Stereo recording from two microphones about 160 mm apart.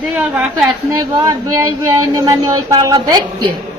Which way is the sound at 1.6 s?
25° right (ahead or behind).